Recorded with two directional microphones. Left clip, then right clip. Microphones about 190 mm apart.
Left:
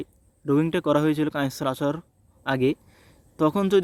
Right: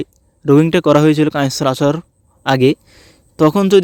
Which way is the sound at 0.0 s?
45° right (ahead or behind).